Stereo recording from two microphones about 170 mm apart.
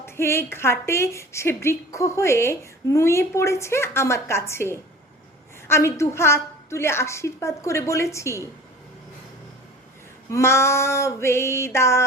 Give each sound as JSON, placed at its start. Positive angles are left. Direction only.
{"t": 0.0, "sound": "a woman's voice", "side_deg": 15}
{"t": 10.3, "sound": "a woman's voice", "side_deg": 15}